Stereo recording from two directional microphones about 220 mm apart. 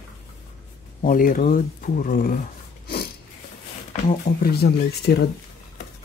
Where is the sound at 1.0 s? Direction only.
40° left (ahead or behind).